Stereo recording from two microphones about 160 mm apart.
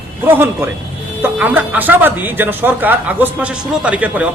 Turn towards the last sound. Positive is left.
turn(degrees=-10)  # may be behind; listen again after turning